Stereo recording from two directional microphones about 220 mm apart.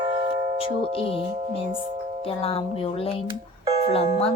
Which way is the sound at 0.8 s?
25° left (ahead or behind).